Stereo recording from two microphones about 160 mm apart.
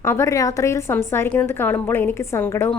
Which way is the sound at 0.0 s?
15° left (ahead or behind).